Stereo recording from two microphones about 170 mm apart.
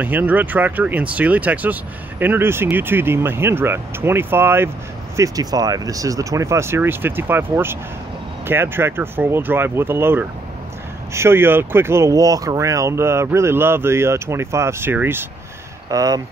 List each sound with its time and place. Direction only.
0.0 s speech: 10° right (ahead or behind)